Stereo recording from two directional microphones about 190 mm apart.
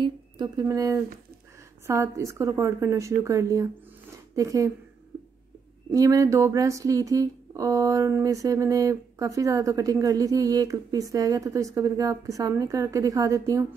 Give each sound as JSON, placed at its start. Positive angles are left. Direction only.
{"t": 0.0, "sound": "speech", "side_deg": -20}
{"t": 5.9, "sound": "speech", "side_deg": -15}